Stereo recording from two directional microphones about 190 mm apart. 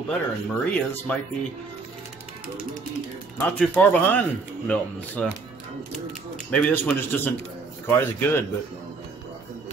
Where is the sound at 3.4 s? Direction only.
5° left (ahead or behind).